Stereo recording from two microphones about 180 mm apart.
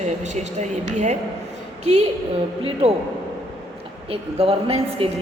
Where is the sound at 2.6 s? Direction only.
30° right (ahead or behind).